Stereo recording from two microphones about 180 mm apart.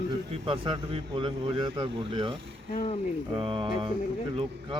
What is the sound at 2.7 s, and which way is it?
Speech, 45° left (ahead or behind).